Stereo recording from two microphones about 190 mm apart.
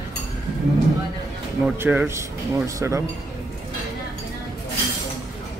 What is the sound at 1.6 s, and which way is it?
Speech, 10° right (ahead or behind).